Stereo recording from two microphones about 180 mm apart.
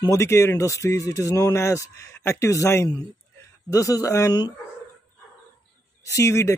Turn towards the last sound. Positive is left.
turn(degrees=15)  # may be behind; listen again after turning